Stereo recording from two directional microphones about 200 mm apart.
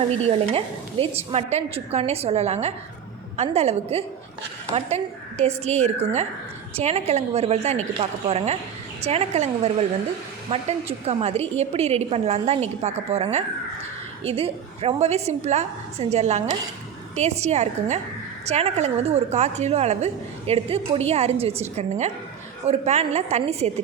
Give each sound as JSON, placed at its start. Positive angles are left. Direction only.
{"t": 0.2, "sound": "a woman's voice", "side_deg": -30}
{"t": 5.4, "sound": "a woman's voice", "side_deg": -35}